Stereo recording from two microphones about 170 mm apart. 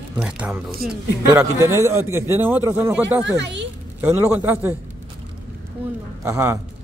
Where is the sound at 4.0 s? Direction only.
15° right (ahead or behind).